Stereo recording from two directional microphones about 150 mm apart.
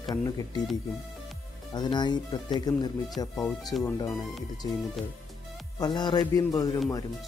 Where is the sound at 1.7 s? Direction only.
30° left (ahead or behind).